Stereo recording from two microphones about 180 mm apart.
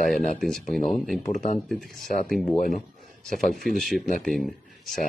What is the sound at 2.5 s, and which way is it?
Speech, 50° left (ahead or behind).